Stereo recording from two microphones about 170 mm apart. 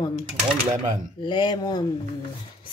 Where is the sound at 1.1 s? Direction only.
30° left (ahead or behind).